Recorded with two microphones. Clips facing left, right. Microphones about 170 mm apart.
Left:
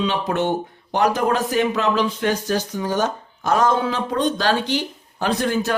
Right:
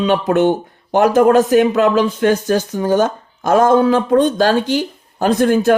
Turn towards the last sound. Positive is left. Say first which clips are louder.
# right 8 dB
turn(degrees=-50)  # may be behind; listen again after turning